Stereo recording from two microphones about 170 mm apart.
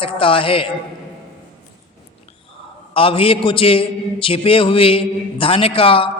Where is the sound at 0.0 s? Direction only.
30° left (ahead or behind).